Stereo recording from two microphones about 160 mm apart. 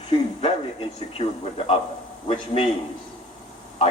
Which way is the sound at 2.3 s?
35° left (ahead or behind).